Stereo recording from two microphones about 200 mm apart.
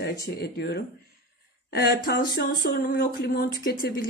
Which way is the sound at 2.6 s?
50° left (ahead or behind).